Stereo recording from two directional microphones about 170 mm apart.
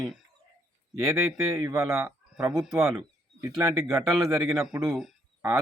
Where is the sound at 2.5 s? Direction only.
Centre (ahead or behind).